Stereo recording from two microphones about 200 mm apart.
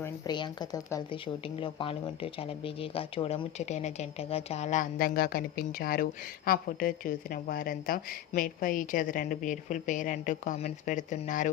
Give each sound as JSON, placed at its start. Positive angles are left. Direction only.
{"t": 0.0, "sound": "speech", "side_deg": 20}